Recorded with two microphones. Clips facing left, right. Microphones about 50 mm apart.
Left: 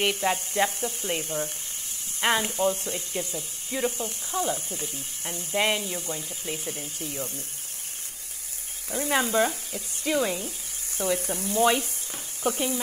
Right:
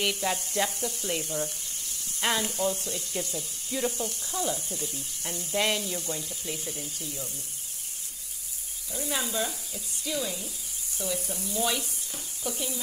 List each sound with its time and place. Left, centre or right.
0.0 s sizzle: left
7.0 s speech: left
8.9 s speech: left